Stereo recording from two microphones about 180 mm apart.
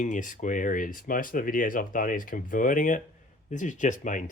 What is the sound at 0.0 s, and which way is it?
Speech, 45° left (ahead or behind).